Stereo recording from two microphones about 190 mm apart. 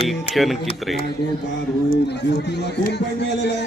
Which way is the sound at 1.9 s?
60° left (ahead or behind).